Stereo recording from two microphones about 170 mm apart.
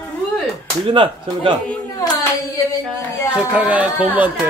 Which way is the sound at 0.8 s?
30° right (ahead or behind).